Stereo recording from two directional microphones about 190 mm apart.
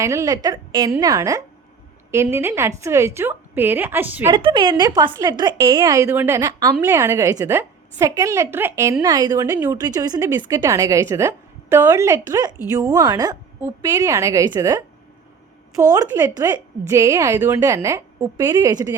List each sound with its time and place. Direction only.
0.0 s a woman's voice: 15° right (ahead or behind)
4.4 s a woman's voice: 25° right (ahead or behind)